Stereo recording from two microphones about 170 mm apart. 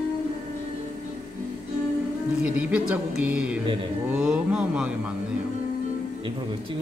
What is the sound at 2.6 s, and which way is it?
A man's voice, 5° right (ahead or behind).